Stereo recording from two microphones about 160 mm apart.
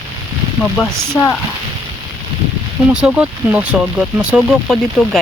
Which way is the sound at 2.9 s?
5° right (ahead or behind).